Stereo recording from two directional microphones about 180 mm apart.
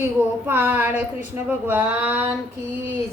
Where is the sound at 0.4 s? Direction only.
10° right (ahead or behind).